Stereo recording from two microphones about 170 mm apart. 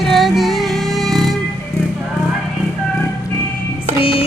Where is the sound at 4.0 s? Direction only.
35° left (ahead or behind).